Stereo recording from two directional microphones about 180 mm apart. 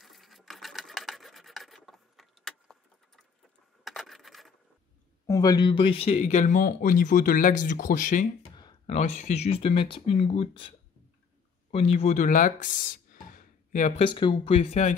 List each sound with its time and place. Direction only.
0.0 s filing: centre (ahead or behind)
3.8 s a sound: centre (ahead or behind)
5.2 s speech: 20° left (ahead or behind); by 8.3 s 45° left (ahead or behind)
8.5 s a sound: 25° left (ahead or behind)
8.9 s speech: 40° left (ahead or behind)
11.7 s speech: 35° left (ahead or behind)
14.0 s speech: 30° left (ahead or behind)